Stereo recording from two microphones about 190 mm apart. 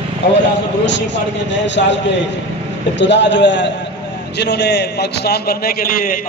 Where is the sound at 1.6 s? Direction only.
70° left (ahead or behind).